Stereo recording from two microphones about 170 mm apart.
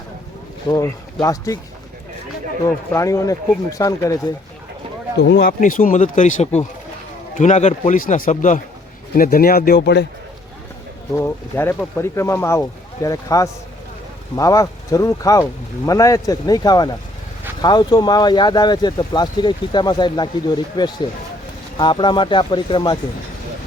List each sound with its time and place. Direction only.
0.7 s speech: 20° left (ahead or behind)
2.9 s speech: 20° left (ahead or behind)
5.2 s speech: 70° left (ahead or behind); by 8.6 s 45° left (ahead or behind)
9.1 s speech: 60° left (ahead or behind); by 10.1 s 80° left
11.1 s speech: 15° left (ahead or behind)